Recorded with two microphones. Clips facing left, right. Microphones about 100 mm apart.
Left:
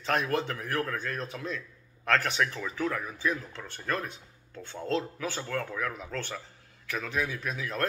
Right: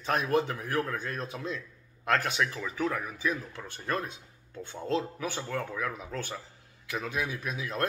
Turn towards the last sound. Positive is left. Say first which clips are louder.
# even
turn(degrees=-20)  # may be behind; listen again after turning